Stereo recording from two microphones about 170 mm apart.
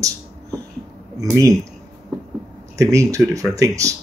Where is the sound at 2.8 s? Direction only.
20° right (ahead or behind).